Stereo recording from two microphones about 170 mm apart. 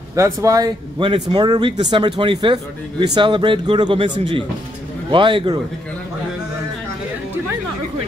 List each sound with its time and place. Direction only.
0.1 s speech: 20° right (ahead or behind)